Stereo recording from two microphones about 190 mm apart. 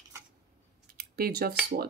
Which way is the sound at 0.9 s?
55° right (ahead or behind).